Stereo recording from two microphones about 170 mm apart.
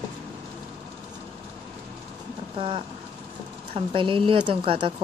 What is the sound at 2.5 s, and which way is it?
Speech, 30° right (ahead or behind).